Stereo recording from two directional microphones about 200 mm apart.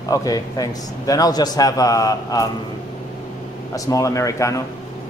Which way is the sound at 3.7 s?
15° left (ahead or behind).